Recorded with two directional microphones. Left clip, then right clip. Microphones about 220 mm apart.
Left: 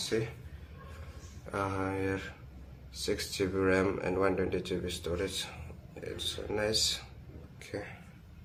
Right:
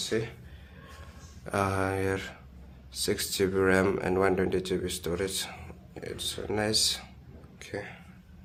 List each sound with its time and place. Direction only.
0.1 s speech: 35° right (ahead or behind)
1.5 s speech: 50° right (ahead or behind); by 7.9 s 35° right (ahead or behind)